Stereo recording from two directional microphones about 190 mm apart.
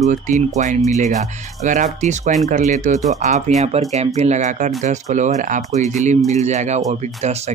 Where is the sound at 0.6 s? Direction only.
40° right (ahead or behind).